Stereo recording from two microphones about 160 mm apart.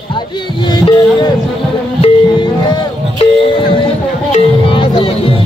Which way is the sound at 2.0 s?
30° left (ahead or behind).